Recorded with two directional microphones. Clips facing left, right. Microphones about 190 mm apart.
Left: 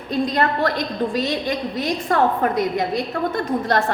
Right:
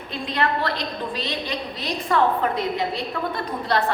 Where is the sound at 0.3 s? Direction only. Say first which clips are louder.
Even; 45° left (ahead or behind).